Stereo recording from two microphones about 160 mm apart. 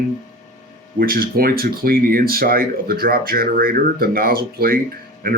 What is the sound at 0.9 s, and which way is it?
Speech, 65° right (ahead or behind).